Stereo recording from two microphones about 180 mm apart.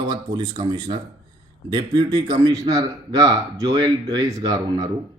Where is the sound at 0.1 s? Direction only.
20° right (ahead or behind).